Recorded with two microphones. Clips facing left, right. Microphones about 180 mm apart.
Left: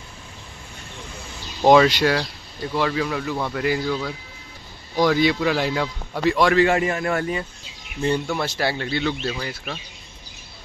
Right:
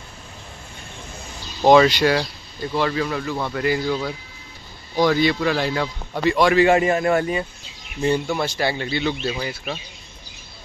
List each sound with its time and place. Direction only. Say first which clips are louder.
1.6 s a man's voice: right 1 dB; centre (ahead or behind)
5.0 s a man's voice: even; 5° left (ahead or behind)
6.5 s a man's voice: right 3 dB; 20° right (ahead or behind)
8.4 s speech: right 1 dB; centre (ahead or behind)